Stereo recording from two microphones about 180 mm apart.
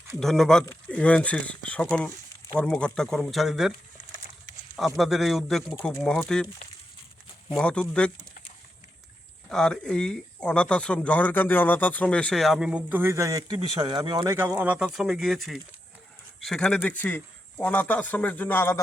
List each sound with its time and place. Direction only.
0.2 s speech: centre (ahead or behind)
4.8 s speech: centre (ahead or behind)
7.5 s speech: 5° left (ahead or behind)
9.5 s speech: 5° left (ahead or behind); by 13.6 s 20° right (ahead or behind)
13.6 s speech: 30° right (ahead or behind)
14.2 s speech: 15° right (ahead or behind); by 18.8 s 10° left (ahead or behind)